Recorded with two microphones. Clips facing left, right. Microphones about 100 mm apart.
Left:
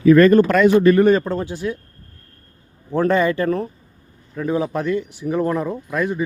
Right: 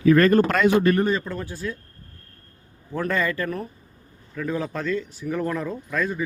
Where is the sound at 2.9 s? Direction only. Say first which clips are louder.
Left 8 dB; 25° left (ahead or behind).